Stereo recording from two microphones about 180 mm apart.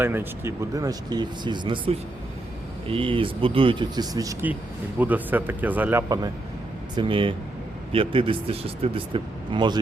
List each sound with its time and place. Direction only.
0.0 s speech: 15° right (ahead or behind)
6.9 s speech: 30° right (ahead or behind)